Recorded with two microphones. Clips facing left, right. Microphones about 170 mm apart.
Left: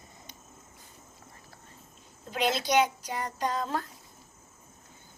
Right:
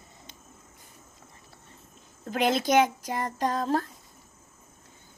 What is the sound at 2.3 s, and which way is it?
Speech, 50° right (ahead or behind).